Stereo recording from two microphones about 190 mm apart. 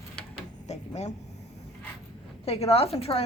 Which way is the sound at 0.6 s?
35° left (ahead or behind).